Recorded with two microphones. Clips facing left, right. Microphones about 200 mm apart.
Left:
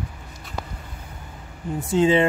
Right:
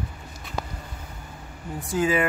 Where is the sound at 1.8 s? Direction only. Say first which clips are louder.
Left 5 dB; 25° left (ahead or behind).